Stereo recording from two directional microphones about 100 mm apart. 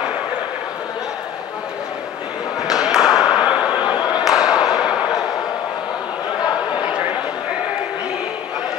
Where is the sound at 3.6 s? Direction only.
45° left (ahead or behind).